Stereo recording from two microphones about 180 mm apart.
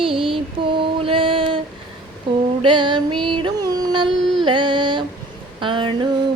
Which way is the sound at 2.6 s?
25° right (ahead or behind).